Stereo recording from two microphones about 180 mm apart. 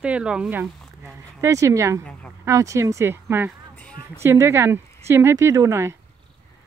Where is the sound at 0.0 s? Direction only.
5° right (ahead or behind).